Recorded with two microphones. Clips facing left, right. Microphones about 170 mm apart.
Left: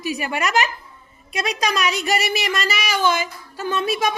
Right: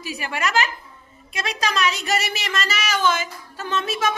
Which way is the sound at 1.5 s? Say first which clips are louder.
Even; 15° left (ahead or behind).